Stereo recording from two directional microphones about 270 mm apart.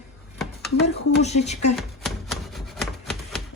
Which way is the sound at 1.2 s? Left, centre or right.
Left.